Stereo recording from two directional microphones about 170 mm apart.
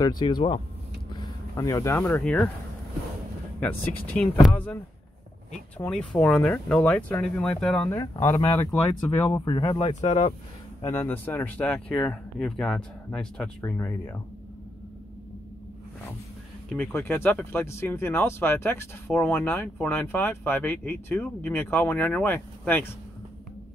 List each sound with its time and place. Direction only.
0.2 s speech: 30° left (ahead or behind)
1.6 s speech: 20° left (ahead or behind)
4.2 s speech: 10° left (ahead or behind)
5.8 s speech: 5° left (ahead or behind)
7.9 s speech: 15° left (ahead or behind)
9.4 s speech: 25° left (ahead or behind)
10.8 s speech: 15° left (ahead or behind)
16.6 s speech: 5° left (ahead or behind)